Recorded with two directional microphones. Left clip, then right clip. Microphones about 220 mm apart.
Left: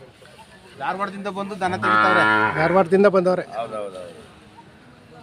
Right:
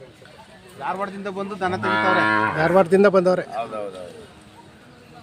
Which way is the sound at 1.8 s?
15° left (ahead or behind).